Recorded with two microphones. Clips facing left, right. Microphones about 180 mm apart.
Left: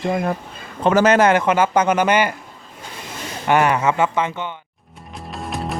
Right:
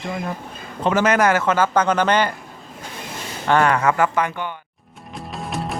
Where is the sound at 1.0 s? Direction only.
25° left (ahead or behind).